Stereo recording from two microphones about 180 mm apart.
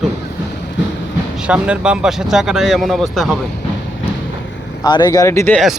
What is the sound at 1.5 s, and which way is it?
Speech, 5° right (ahead or behind).